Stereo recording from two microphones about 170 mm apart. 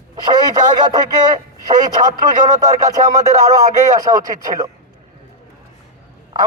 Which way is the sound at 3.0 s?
40° right (ahead or behind).